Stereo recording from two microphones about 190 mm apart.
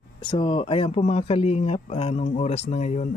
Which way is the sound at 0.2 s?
25° left (ahead or behind).